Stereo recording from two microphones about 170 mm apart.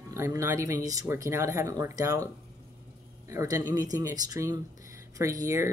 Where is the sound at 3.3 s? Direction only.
20° right (ahead or behind).